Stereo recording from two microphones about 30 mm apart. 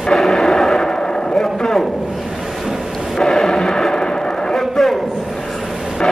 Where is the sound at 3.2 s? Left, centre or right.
Centre.